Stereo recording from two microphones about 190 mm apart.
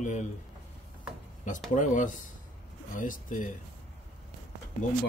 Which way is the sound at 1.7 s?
40° left (ahead or behind).